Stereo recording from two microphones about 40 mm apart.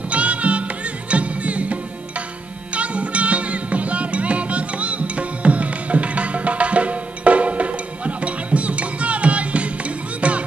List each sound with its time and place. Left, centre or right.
0.1 s music: right